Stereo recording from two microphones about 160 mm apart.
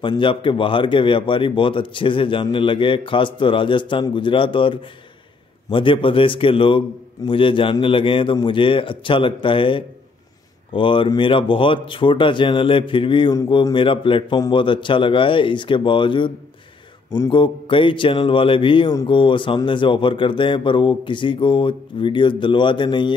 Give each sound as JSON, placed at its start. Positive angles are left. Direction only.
{"t": 0.0, "sound": "speech", "side_deg": 30}
{"t": 17.3, "sound": "speech", "side_deg": 30}